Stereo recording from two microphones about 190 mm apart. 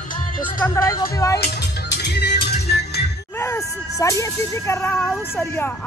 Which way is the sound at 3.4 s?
15° left (ahead or behind).